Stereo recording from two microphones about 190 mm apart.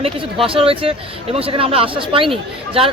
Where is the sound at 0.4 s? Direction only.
30° right (ahead or behind).